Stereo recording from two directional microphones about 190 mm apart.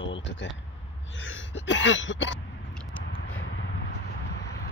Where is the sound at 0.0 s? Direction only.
75° left (ahead or behind).